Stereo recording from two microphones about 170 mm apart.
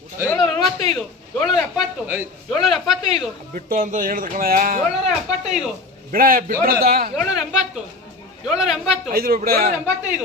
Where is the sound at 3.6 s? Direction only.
50° right (ahead or behind).